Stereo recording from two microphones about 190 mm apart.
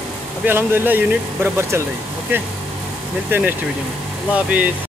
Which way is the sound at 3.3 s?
10° right (ahead or behind).